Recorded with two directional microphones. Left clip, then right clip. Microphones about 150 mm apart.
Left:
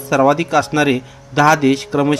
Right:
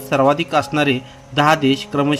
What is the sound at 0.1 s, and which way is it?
A man's voice, 5° left (ahead or behind).